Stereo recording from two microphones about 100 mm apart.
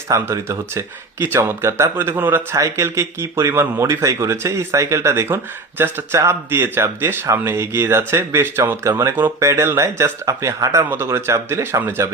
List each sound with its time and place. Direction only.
0.1 s speech: 30° right (ahead or behind)
2.6 s speech: 30° right (ahead or behind)